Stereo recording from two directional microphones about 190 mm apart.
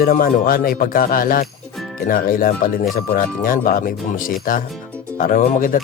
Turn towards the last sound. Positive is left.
turn(degrees=45)  # may be behind; listen again after turning